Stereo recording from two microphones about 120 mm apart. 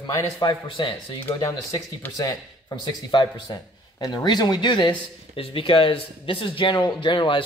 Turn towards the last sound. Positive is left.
turn(degrees=40)  # may be behind; listen again after turning